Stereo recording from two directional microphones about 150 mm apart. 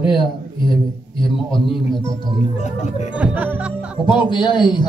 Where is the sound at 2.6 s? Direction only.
50° left (ahead or behind).